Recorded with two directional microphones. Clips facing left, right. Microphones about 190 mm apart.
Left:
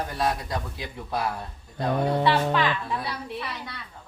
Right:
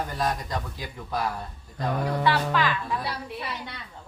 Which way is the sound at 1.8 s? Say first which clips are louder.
Left 3 dB; 25° left (ahead or behind).